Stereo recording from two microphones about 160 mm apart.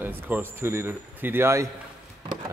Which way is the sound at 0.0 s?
10° right (ahead or behind).